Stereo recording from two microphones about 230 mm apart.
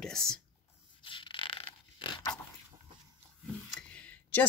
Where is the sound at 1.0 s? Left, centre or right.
Left.